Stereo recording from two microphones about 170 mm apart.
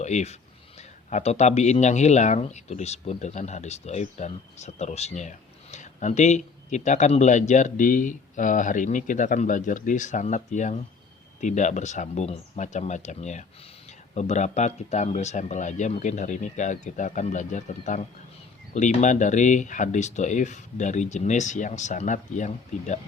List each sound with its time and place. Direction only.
0.0 s speech: 40° left (ahead or behind)